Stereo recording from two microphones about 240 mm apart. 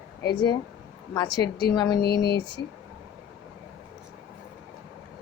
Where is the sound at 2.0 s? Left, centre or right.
Left.